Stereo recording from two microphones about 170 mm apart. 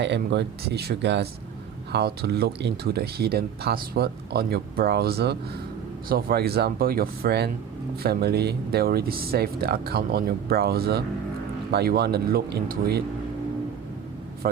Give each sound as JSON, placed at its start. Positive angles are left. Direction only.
{"t": 0.0, "sound": "speech", "side_deg": -90}
{"t": 6.1, "sound": "speech", "side_deg": -60}
{"t": 14.4, "sound": "speech", "side_deg": -55}